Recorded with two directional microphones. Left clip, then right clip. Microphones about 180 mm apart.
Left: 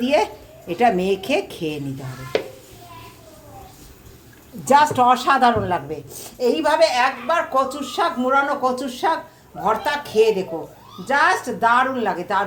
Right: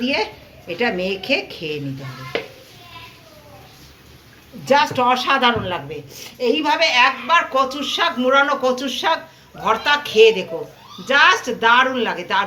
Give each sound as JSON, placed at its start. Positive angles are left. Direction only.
{"t": 0.0, "sound": "a woman's voice", "side_deg": 65}
{"t": 4.6, "sound": "a woman's voice", "side_deg": 55}